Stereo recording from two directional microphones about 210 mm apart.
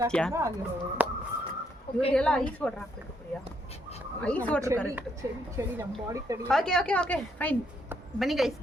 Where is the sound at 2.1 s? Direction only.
5° left (ahead or behind).